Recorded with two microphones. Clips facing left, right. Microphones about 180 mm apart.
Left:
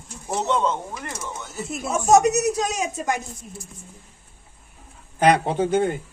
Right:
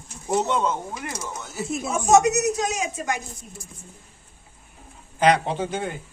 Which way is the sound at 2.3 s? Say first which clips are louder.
Left 1 dB; 40° left (ahead or behind).